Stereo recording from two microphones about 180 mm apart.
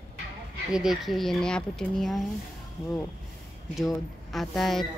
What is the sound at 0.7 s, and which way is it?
A woman's voice, centre (ahead or behind).